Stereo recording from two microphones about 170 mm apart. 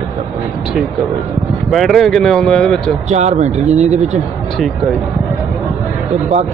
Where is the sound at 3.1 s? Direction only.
40° right (ahead or behind).